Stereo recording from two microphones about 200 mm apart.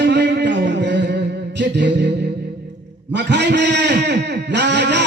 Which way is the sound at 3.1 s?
60° right (ahead or behind).